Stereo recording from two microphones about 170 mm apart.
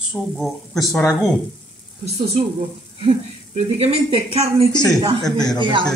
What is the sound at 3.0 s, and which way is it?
A woman's voice, 35° right (ahead or behind).